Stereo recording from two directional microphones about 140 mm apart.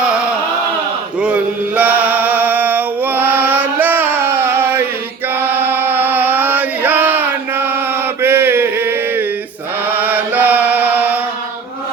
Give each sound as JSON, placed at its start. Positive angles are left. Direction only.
{"t": 1.2, "sound": "chant", "side_deg": -10}
{"t": 8.2, "sound": "mantra", "side_deg": -15}